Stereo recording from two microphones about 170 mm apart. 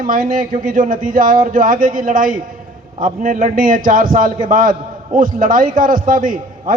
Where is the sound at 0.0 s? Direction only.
55° right (ahead or behind).